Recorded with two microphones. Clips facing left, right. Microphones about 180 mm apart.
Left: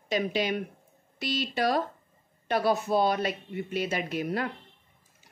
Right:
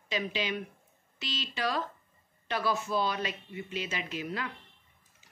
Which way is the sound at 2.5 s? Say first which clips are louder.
Left 6 dB; 50° left (ahead or behind).